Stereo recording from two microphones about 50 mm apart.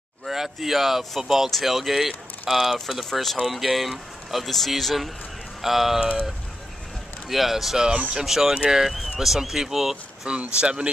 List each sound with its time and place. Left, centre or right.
0.3 s speech: centre
7.2 s speech: centre
10.2 s speech: centre